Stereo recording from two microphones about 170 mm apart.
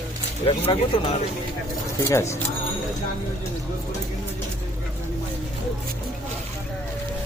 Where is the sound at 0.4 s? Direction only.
35° left (ahead or behind).